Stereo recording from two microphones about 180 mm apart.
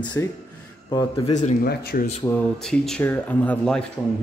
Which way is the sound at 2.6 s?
Centre (ahead or behind).